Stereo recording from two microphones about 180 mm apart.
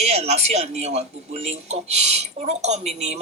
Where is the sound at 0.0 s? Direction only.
40° right (ahead or behind).